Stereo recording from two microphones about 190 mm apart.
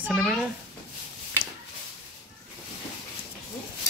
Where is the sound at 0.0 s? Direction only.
5° right (ahead or behind).